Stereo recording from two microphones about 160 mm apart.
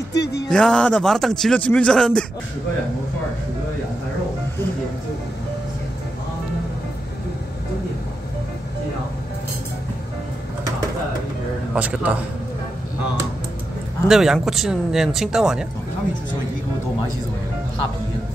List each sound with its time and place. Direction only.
0.1 s music: 90° left
0.5 s a man's voice: 5° left (ahead or behind)
11.7 s a man's voice: 5° right (ahead or behind)
14.0 s a man's voice: centre (ahead or behind)